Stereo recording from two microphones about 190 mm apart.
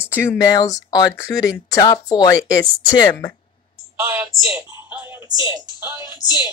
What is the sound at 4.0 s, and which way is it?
A woman's voice, 15° right (ahead or behind).